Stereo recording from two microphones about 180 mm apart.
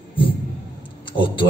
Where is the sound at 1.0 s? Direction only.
30° left (ahead or behind).